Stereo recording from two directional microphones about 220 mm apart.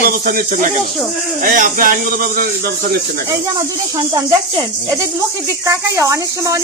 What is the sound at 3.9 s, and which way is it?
Speech, 15° right (ahead or behind).